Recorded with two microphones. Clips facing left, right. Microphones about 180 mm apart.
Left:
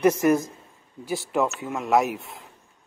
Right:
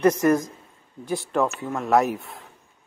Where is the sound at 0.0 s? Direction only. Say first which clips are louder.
Right 1 dB; 10° left (ahead or behind).